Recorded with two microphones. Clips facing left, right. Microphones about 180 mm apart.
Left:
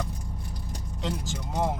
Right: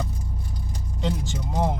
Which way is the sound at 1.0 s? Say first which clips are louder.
Right 4 dB; centre (ahead or behind).